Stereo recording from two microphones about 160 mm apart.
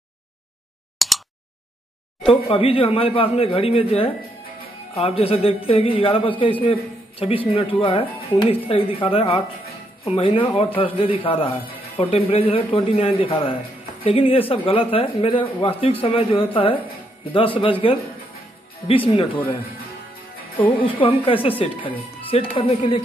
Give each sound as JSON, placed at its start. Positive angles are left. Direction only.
{"t": 0.9, "sound": "a sound", "side_deg": 0}
{"t": 2.2, "sound": "speech", "side_deg": 35}
{"t": 20.6, "sound": "speech", "side_deg": 30}